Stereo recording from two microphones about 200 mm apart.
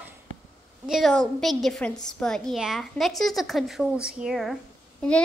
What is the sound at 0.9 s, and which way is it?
A woman's voice, centre (ahead or behind).